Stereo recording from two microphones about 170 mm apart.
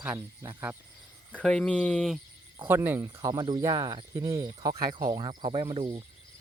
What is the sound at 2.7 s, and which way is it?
Speech, 15° right (ahead or behind).